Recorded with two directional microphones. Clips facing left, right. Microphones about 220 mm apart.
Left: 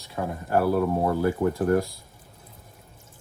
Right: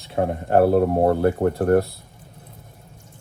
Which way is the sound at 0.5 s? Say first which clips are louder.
Right 6 dB; 60° right (ahead or behind).